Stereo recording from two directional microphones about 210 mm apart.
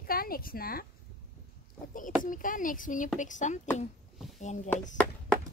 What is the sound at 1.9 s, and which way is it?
Speech, 40° left (ahead or behind).